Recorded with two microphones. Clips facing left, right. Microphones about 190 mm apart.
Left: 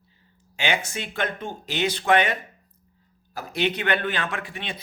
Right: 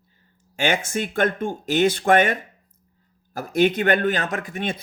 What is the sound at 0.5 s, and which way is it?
Speech, 45° right (ahead or behind).